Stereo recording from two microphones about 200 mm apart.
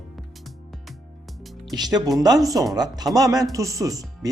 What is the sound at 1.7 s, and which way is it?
Speech, 20° right (ahead or behind).